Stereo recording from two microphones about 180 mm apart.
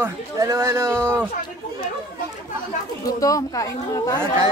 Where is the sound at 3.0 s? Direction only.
20° left (ahead or behind).